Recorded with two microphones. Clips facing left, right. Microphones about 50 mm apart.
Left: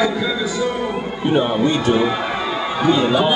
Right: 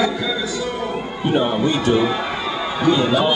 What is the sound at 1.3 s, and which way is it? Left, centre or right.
A man's voice, centre.